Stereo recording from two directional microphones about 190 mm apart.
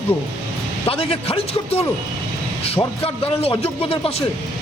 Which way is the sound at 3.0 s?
30° left (ahead or behind).